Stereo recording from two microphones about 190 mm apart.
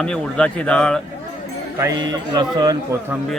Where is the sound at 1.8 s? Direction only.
20° right (ahead or behind).